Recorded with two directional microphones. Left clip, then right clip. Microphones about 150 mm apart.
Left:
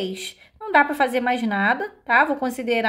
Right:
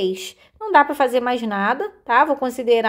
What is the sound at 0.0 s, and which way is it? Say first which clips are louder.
Speech: right 6 dB; 30° right (ahead or behind).